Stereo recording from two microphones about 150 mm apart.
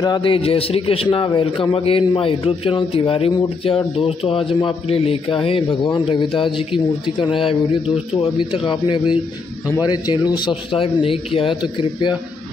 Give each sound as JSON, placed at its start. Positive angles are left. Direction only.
{"t": 0.0, "sound": "a man's voice", "side_deg": 30}